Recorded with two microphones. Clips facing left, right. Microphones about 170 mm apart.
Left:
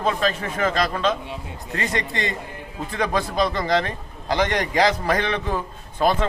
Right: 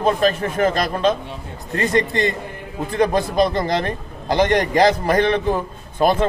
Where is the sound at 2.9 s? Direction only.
50° right (ahead or behind).